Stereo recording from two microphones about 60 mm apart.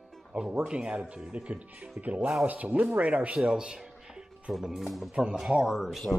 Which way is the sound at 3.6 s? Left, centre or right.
Centre.